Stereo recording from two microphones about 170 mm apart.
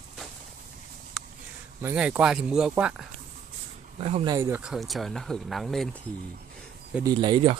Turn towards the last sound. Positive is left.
turn(degrees=-25)  # may be behind; listen again after turning